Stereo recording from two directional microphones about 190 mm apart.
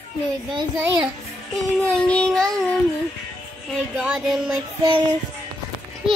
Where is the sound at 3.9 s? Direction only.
5° right (ahead or behind).